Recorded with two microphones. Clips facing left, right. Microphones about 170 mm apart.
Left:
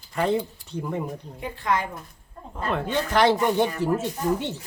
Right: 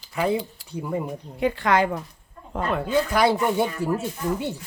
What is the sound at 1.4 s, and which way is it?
Speech, 80° right.